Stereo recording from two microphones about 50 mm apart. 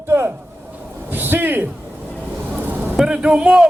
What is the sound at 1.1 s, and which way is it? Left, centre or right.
Speech, right.